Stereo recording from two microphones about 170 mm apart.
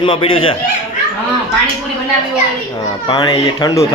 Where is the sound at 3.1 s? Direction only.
25° left (ahead or behind).